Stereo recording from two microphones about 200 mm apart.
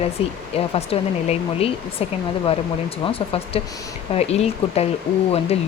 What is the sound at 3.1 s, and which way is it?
Speech, 30° left (ahead or behind).